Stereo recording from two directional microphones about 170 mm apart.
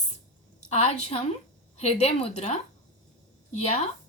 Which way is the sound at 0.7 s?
40° left (ahead or behind).